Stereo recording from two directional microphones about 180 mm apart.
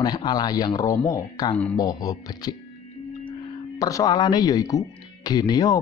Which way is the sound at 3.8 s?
20° left (ahead or behind).